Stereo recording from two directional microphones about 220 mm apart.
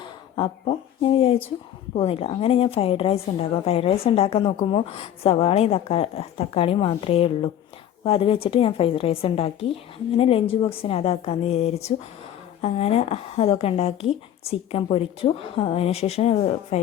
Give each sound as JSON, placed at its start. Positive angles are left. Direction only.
{"t": 0.0, "sound": "speech", "side_deg": 25}